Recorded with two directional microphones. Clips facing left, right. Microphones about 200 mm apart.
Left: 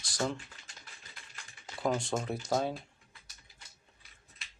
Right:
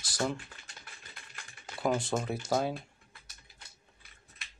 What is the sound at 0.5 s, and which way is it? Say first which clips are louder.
Typing: right 3 dB; 55° right (ahead or behind).